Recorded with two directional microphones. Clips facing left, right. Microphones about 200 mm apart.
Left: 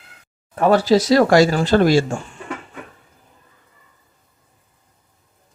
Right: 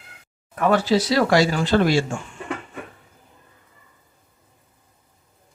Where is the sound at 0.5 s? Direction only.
35° left (ahead or behind).